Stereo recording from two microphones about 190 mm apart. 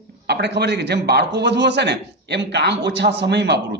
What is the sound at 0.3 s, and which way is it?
A man's voice, 60° right (ahead or behind).